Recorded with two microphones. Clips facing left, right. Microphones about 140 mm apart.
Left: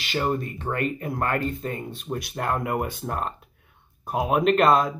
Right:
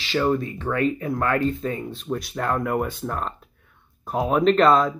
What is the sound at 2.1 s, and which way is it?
Speech, 5° left (ahead or behind).